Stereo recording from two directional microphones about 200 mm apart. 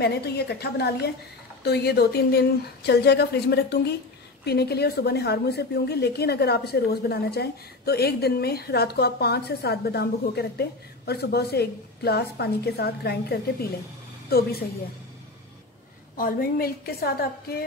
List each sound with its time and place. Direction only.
0.0 s a woman's voice: 55° left (ahead or behind)
16.2 s a woman's voice: 45° left (ahead or behind)